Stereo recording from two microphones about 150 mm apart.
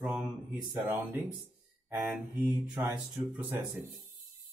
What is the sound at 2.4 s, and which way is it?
Speech, 15° right (ahead or behind).